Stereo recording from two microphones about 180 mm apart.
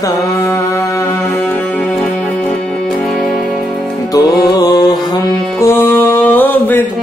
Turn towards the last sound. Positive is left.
turn(degrees=10)  # may be behind; listen again after turning